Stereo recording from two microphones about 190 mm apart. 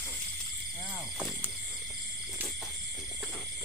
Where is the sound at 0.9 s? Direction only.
5° right (ahead or behind).